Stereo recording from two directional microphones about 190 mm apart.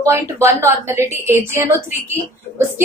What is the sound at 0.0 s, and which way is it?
A woman's voice, 15° right (ahead or behind).